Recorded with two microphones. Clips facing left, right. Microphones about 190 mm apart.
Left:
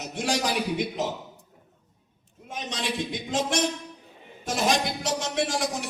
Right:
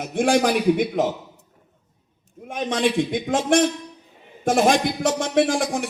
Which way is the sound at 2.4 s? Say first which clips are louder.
Right 10 dB; 55° right (ahead or behind).